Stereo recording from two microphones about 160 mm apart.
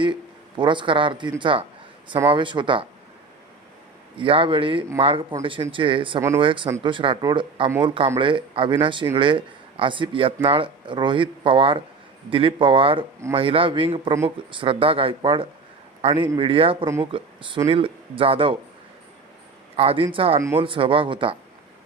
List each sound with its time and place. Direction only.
0.0 s speech: 30° right (ahead or behind)
4.2 s a man's voice: 35° right (ahead or behind)
19.7 s speech: 35° right (ahead or behind)